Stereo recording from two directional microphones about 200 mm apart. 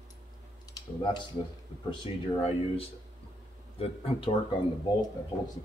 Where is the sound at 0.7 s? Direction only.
25° left (ahead or behind).